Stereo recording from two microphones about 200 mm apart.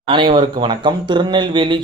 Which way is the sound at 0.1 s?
25° right (ahead or behind).